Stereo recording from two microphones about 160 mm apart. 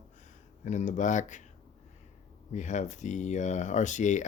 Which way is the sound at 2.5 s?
50° left (ahead or behind).